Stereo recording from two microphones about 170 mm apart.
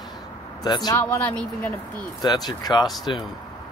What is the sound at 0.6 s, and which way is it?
Speech, 25° left (ahead or behind).